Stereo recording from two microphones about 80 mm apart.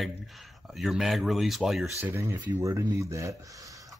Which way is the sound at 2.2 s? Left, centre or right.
Right.